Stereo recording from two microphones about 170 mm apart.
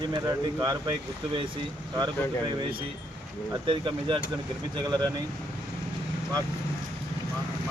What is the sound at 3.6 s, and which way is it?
Speech, 30° right (ahead or behind).